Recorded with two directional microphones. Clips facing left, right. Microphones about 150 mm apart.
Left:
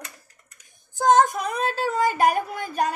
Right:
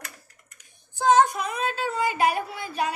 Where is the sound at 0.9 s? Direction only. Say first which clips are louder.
Left 1 dB; 45° left (ahead or behind).